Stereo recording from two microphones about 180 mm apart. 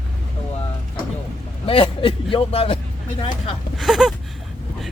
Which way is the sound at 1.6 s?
30° left (ahead or behind).